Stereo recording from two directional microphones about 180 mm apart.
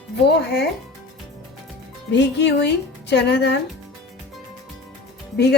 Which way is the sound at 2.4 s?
70° left (ahead or behind).